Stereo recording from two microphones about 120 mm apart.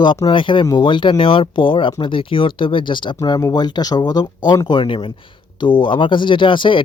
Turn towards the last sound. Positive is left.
turn(degrees=45)  # may be behind; listen again after turning